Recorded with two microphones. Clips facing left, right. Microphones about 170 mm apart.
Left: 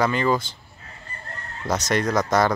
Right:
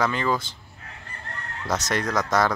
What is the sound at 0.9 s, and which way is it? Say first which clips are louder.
Chicken: left 1 dB; 70° right (ahead or behind).